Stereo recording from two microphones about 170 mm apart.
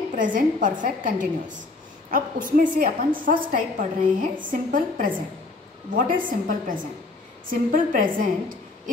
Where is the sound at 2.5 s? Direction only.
50° right (ahead or behind).